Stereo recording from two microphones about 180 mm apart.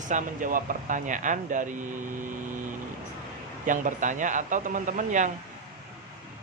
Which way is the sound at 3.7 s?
45° right (ahead or behind).